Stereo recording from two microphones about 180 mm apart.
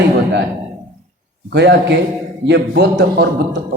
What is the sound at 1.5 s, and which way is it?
A man's voice, 70° right (ahead or behind).